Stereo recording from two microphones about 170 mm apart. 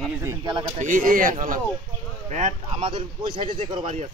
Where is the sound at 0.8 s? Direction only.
50° right (ahead or behind).